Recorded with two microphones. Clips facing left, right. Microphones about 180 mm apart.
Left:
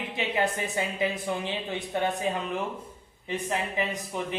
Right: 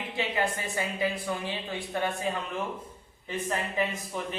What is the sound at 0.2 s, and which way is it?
Speech, 20° left (ahead or behind).